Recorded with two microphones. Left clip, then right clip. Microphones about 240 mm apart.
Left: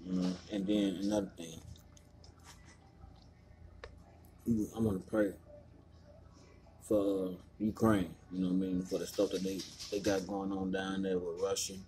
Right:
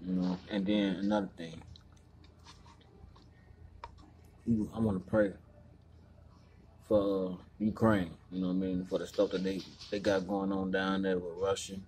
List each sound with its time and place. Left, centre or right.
0.6 s a sound: right
0.8 s speech: centre
4.5 s speech: centre
6.9 s speech: centre